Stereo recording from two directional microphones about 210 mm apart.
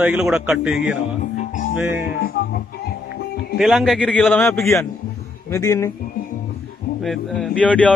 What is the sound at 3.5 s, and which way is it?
A man's voice, centre (ahead or behind).